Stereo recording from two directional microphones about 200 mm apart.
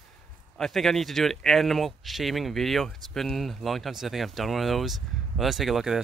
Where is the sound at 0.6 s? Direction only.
Centre (ahead or behind).